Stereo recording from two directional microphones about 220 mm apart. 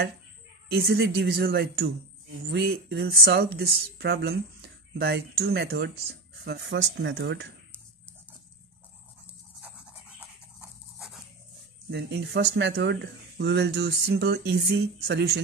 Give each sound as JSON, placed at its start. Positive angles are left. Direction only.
{"t": 0.7, "sound": "speech", "side_deg": -45}
{"t": 11.9, "sound": "speech", "side_deg": -50}